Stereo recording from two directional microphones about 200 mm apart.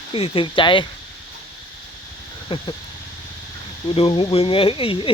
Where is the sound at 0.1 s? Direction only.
25° left (ahead or behind).